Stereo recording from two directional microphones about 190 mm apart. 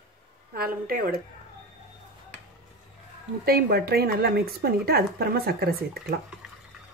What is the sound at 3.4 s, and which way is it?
Speech, 55° right (ahead or behind).